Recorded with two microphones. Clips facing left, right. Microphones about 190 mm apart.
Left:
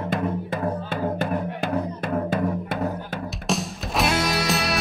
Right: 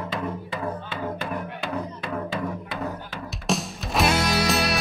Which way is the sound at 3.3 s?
Centre (ahead or behind).